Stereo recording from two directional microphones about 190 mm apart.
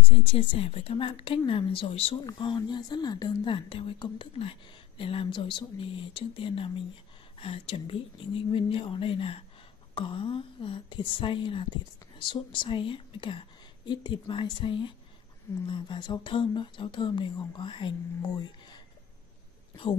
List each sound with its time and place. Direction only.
0.2 s a woman's voice: 30° left (ahead or behind)